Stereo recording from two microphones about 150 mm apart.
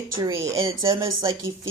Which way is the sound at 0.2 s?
20° right (ahead or behind).